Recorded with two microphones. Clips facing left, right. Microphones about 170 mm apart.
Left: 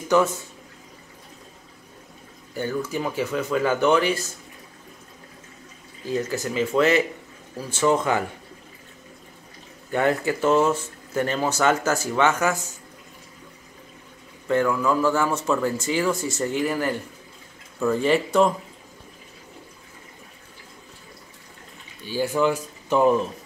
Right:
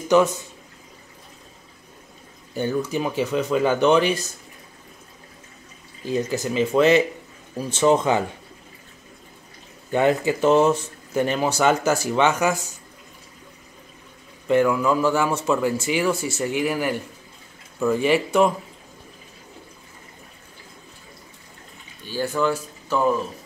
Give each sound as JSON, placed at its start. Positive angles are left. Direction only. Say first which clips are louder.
{"t": 0.1, "sound": "speech", "louder": "right 3 dB", "side_deg": -15}
{"t": 2.5, "sound": "speech", "louder": "right 3 dB", "side_deg": -20}
{"t": 6.0, "sound": "speech", "louder": "right 2 dB", "side_deg": -15}
{"t": 9.8, "sound": "speech", "louder": "right 3 dB", "side_deg": -20}
{"t": 14.5, "sound": "speech", "louder": "right 3 dB", "side_deg": -15}
{"t": 22.0, "sound": "speech", "louder": "left 1 dB", "side_deg": 10}